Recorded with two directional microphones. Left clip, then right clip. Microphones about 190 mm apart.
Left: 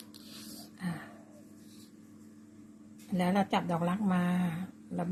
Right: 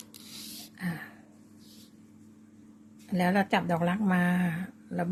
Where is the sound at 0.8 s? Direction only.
25° right (ahead or behind).